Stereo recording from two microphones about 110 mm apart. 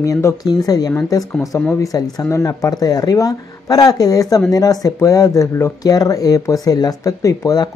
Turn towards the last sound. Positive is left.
turn(degrees=30)  # may be behind; listen again after turning